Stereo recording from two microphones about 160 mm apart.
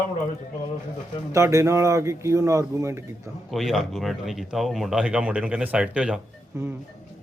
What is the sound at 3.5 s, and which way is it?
Speech, centre (ahead or behind).